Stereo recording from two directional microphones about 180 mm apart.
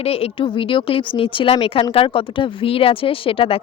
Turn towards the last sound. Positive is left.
turn(degrees=30)  # may be behind; listen again after turning